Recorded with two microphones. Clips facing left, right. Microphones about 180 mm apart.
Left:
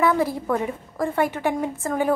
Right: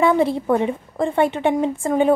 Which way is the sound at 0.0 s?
25° right (ahead or behind).